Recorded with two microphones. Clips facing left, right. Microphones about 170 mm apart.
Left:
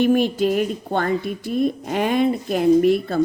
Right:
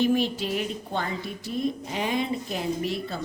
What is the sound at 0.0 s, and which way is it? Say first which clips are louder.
Speech: left 7 dB; 55° left (ahead or behind).